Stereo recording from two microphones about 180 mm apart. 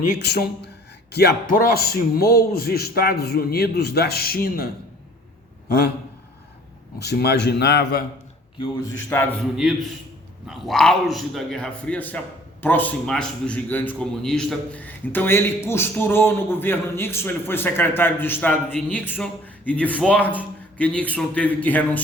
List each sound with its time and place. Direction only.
0.0 s a man's voice: 55° left (ahead or behind)
7.0 s a man's voice: 65° left (ahead or behind)
9.0 s a man's voice: 10° left (ahead or behind)
10.4 s a man's voice: centre (ahead or behind)